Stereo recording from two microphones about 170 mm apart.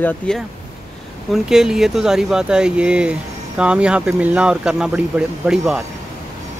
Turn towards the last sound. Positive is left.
turn(degrees=-5)  # may be behind; listen again after turning